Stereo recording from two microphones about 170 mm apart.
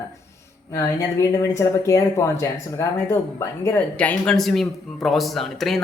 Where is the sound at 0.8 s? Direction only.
20° left (ahead or behind).